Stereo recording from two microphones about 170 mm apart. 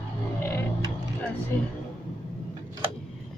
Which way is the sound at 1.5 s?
10° left (ahead or behind).